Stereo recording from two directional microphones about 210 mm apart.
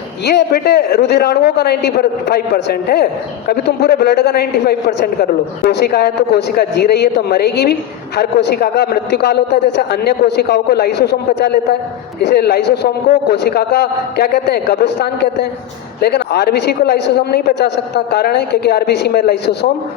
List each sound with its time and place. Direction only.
0.3 s a man's voice: 50° left (ahead or behind)
12.2 s a man's voice: 50° left (ahead or behind)